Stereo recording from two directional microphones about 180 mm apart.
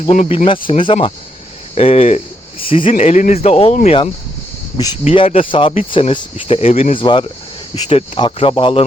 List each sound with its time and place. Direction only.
0.0 s speech: 35° left (ahead or behind)
2.9 s speech: 40° left (ahead or behind)